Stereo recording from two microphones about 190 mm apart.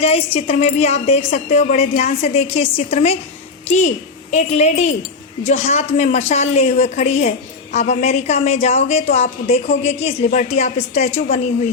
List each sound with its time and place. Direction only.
0.3 s a woman's voice: 35° left (ahead or behind)